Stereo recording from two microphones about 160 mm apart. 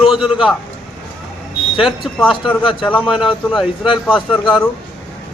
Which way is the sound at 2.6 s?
30° left (ahead or behind).